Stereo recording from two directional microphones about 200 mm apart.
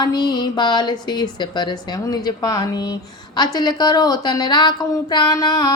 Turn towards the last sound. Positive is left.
turn(degrees=20)  # may be behind; listen again after turning